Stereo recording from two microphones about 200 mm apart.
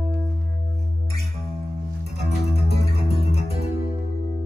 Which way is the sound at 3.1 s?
30° left (ahead or behind).